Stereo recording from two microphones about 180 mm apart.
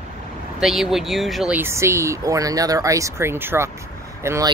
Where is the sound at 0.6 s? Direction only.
Centre (ahead or behind).